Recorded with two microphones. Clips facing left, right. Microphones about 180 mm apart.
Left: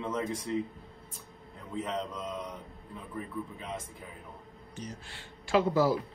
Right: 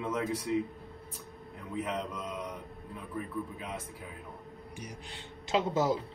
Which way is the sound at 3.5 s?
10° right (ahead or behind).